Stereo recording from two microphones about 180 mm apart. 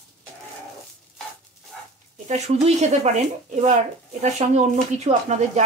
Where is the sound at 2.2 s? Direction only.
40° right (ahead or behind).